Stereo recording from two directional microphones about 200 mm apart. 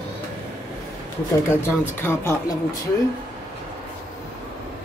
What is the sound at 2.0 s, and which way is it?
Speech, 10° left (ahead or behind).